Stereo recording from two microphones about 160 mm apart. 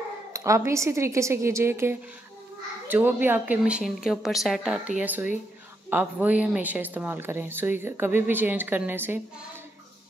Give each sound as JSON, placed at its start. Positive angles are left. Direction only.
{"t": 0.3, "sound": "a woman's voice", "side_deg": -20}